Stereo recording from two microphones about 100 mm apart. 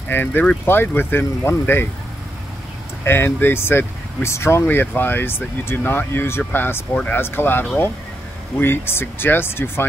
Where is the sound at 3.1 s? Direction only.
20° left (ahead or behind).